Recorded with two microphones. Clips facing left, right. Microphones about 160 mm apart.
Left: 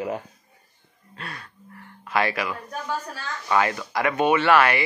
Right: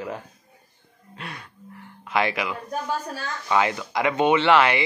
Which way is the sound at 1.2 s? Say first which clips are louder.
Even; 15° right (ahead or behind).